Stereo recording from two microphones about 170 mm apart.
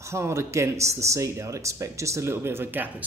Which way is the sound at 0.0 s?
15° right (ahead or behind).